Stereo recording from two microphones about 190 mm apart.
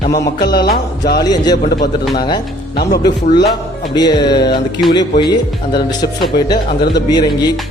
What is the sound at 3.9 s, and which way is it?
A man's voice, 20° left (ahead or behind).